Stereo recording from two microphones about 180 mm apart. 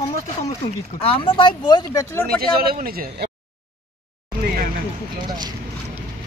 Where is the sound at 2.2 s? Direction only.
55° right (ahead or behind).